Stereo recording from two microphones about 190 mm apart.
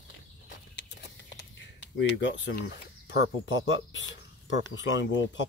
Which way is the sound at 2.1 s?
70° left (ahead or behind).